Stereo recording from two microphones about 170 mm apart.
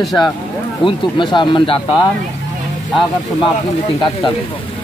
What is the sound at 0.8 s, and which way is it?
Speech, 30° left (ahead or behind).